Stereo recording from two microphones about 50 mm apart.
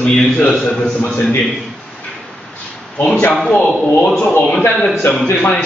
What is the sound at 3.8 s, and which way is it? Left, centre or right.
Speech, left.